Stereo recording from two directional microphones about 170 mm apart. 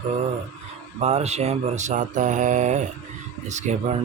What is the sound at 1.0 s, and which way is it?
Speech, 40° right (ahead or behind).